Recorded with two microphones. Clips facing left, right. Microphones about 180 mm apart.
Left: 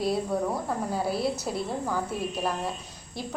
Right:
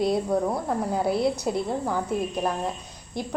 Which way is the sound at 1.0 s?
20° right (ahead or behind).